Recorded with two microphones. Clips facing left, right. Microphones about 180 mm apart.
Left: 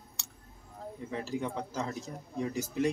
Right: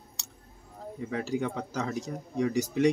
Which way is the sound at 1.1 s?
85° right.